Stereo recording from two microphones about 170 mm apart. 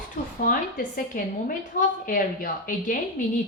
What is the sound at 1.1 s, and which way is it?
A woman's voice, 55° left (ahead or behind).